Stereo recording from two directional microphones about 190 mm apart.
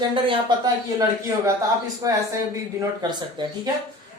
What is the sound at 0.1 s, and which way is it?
Speech, 25° right (ahead or behind).